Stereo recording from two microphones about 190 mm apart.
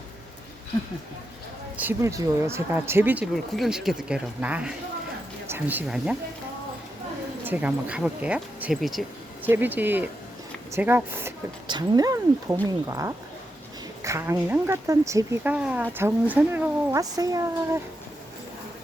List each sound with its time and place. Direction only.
1.7 s speech: 10° right (ahead or behind)
7.4 s speech: 10° right (ahead or behind)